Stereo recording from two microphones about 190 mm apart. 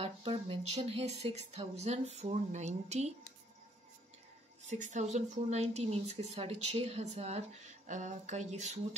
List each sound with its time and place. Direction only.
0.0 s speech: 30° right (ahead or behind)
4.6 s speech: 40° right (ahead or behind)